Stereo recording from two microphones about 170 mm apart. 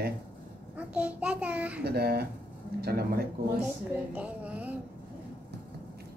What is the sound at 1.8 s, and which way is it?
Speech, 65° right (ahead or behind).